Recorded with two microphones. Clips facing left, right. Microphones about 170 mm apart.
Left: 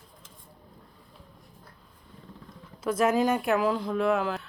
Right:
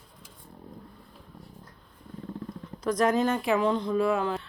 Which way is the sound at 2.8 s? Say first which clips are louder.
Even; 5° left (ahead or behind).